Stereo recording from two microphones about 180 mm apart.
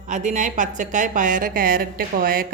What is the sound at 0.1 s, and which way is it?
A woman's voice, 40° right (ahead or behind).